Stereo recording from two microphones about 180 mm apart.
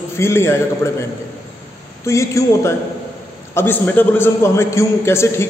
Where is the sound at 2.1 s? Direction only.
15° left (ahead or behind).